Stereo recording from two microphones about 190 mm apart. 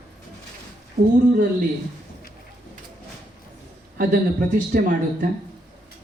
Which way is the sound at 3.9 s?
45° right (ahead or behind).